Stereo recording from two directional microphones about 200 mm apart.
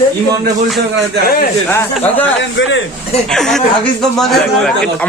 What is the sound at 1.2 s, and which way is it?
Speech, 45° left (ahead or behind).